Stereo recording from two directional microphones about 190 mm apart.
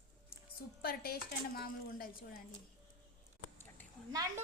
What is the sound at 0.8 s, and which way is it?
Speech, 55° left (ahead or behind).